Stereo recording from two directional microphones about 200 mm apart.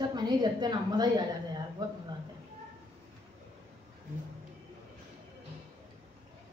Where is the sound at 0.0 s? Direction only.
20° right (ahead or behind).